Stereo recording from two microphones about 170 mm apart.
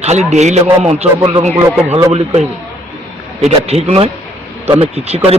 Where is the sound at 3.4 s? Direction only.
40° right (ahead or behind).